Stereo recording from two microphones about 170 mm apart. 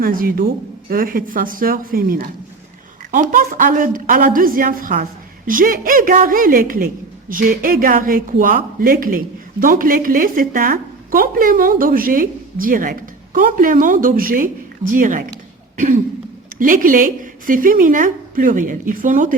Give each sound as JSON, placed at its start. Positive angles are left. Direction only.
{"t": 0.0, "sound": "a woman's voice", "side_deg": -55}
{"t": 16.6, "sound": "a woman's voice", "side_deg": -55}